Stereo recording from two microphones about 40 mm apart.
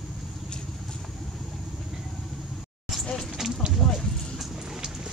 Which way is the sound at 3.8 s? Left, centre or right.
Centre.